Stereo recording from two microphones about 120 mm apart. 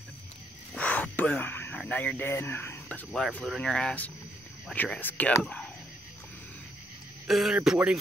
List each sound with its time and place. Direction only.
0.7 s a sound: 10° left (ahead or behind)
1.9 s speech: 10° left (ahead or behind)
3.4 s speech: 5° left (ahead or behind)
7.2 s speech: centre (ahead or behind)